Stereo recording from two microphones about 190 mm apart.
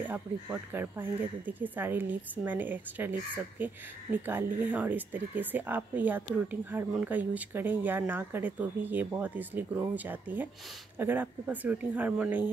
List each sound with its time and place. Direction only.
0.0 s speech: 10° right (ahead or behind)